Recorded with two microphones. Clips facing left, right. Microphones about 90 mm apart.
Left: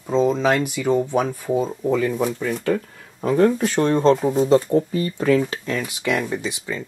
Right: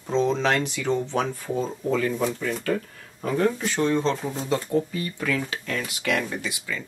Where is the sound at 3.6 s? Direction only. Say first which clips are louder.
Left 5 dB; 50° left (ahead or behind); by 5.7 s 30° left (ahead or behind).